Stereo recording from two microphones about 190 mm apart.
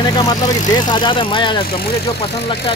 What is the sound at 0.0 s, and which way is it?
Speech, 20° left (ahead or behind).